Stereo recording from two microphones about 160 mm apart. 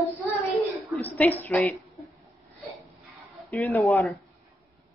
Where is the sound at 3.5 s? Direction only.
15° left (ahead or behind).